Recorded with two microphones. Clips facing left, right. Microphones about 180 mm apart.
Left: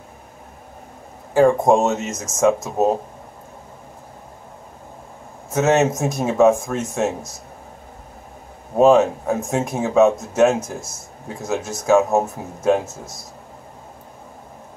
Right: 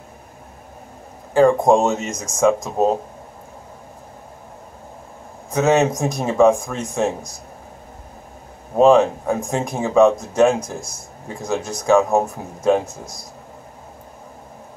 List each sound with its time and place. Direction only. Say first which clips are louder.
1.3 s speech: right 1 dB; 5° left (ahead or behind)
5.5 s speech: even; 5° left (ahead or behind)
8.7 s speech: right 1 dB; 5° left (ahead or behind)